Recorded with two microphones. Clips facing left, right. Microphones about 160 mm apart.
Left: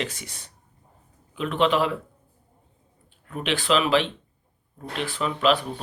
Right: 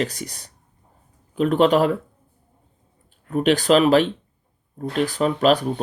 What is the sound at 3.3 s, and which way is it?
Speech, 40° right (ahead or behind).